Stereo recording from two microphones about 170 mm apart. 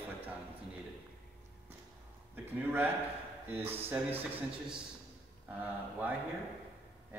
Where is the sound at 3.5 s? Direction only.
10° right (ahead or behind).